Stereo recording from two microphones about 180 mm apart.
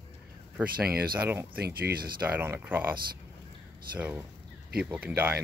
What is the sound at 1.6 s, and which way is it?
Speech, 60° right (ahead or behind).